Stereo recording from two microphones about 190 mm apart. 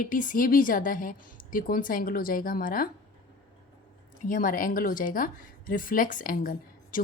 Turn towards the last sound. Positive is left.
turn(degrees=45)  # may be behind; listen again after turning